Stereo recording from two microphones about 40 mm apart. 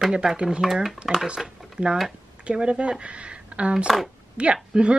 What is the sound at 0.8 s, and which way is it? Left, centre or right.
Speech, centre.